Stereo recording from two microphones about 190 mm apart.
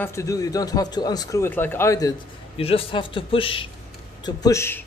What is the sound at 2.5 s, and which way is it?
A man's voice, 30° left (ahead or behind).